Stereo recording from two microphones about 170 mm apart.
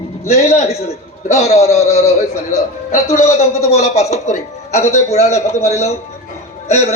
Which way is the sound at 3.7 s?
40° left (ahead or behind).